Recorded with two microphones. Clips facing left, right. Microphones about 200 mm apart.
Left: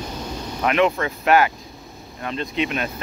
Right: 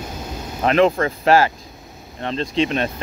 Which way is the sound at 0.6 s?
35° right (ahead or behind).